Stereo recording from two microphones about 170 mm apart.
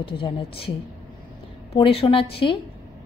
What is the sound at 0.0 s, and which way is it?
A woman's voice, 30° left (ahead or behind).